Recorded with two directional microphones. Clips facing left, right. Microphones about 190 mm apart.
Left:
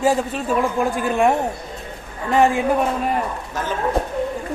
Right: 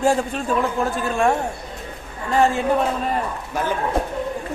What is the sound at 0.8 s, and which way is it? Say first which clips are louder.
A man's voice: left 2 dB; 15° left (ahead or behind).